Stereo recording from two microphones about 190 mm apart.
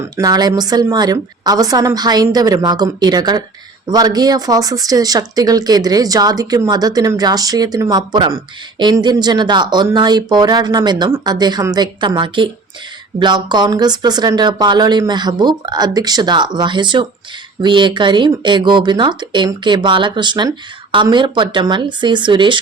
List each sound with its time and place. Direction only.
0.2 s speech: 20° right (ahead or behind)